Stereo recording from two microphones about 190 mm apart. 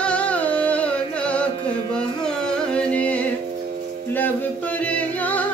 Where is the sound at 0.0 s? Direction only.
5° left (ahead or behind).